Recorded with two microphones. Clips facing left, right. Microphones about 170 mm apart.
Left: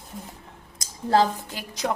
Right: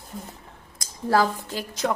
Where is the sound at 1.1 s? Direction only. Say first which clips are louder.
Left 1 dB; 20° left (ahead or behind).